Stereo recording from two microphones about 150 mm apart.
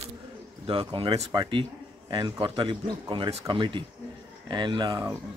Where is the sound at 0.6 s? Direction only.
35° right (ahead or behind).